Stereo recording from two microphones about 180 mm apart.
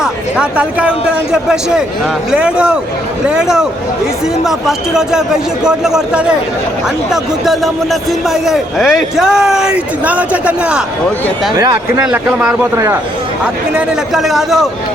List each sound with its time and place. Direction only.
0.0 s speech: 5° right (ahead or behind)
11.5 s speech: 20° right (ahead or behind)
12.4 s speech: 5° right (ahead or behind)